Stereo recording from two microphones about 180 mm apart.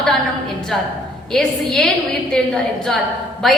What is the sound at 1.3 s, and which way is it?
Speech, centre (ahead or behind).